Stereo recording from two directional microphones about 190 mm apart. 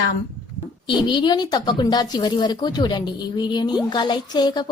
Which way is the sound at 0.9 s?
25° left (ahead or behind).